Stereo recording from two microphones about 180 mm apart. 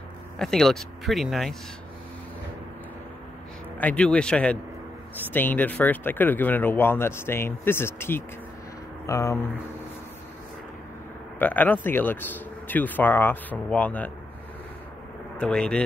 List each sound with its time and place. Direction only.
0.4 s speech: centre (ahead or behind)
3.7 s speech: 10° left (ahead or behind)
11.3 s speech: 10° left (ahead or behind)
15.3 s speech: 5° left (ahead or behind)